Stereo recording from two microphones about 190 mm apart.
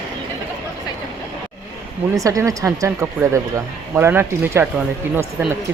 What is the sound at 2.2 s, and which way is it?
Speech, 15° right (ahead or behind).